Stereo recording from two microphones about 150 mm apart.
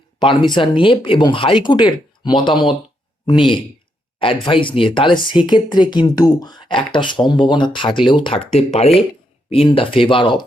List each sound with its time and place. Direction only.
0.2 s speech: 35° left (ahead or behind)